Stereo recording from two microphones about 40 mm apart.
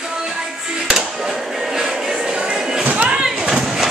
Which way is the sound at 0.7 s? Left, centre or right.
Centre.